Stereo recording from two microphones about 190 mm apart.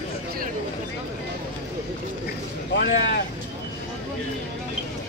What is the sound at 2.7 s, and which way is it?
Vehicle, 70° left (ahead or behind).